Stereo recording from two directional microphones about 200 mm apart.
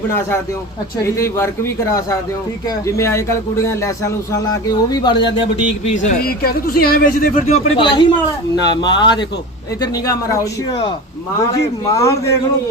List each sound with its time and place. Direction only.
1.0 s speech: 15° left (ahead or behind)
5.8 s speech: 35° left (ahead or behind)
7.8 s speech: 25° left (ahead or behind)
11.9 s speech: 15° left (ahead or behind)